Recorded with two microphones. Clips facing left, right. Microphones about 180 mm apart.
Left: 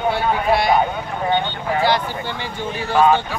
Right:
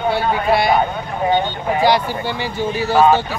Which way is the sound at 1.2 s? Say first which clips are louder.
Right 3 dB; 15° right (ahead or behind).